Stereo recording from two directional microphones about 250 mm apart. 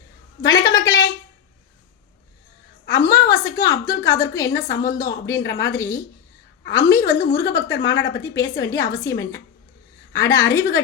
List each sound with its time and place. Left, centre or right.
0.4 s a woman's voice: centre
2.9 s a sound: centre
4.0 s a woman's voice: centre
7.7 s speech: left
8.4 s a woman's voice: centre